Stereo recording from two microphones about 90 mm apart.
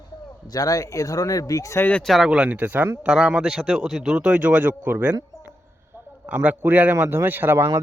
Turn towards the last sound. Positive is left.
turn(degrees=-30)  # may be behind; listen again after turning